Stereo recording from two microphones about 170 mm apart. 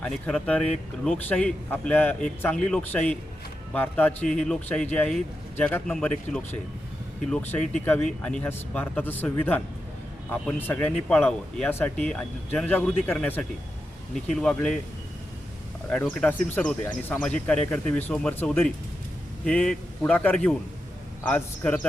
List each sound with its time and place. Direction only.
0.0 s speech: 5° left (ahead or behind)
15.9 s speech: 5° left (ahead or behind)